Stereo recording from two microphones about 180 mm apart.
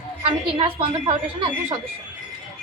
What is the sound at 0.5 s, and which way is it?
Speech, 30° right (ahead or behind).